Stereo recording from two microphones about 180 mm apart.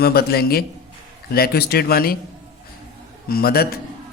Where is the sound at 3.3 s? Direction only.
55° left (ahead or behind).